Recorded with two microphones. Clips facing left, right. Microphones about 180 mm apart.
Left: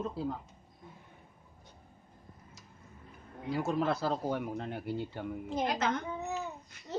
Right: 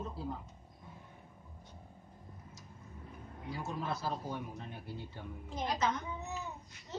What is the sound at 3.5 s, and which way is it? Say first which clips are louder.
Speech: left 9 dB; 85° left.